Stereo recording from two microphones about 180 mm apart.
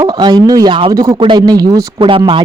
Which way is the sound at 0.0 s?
25° right (ahead or behind).